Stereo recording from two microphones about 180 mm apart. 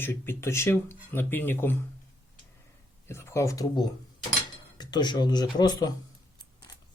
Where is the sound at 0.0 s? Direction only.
10° left (ahead or behind).